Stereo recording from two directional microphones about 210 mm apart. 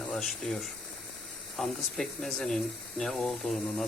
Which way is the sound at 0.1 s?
Centre (ahead or behind).